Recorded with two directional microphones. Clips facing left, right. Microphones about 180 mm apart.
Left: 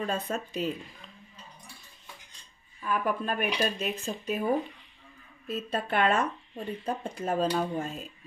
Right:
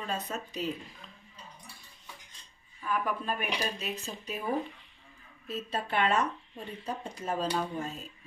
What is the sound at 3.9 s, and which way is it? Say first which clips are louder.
Speech: left 6 dB; 55° left (ahead or behind).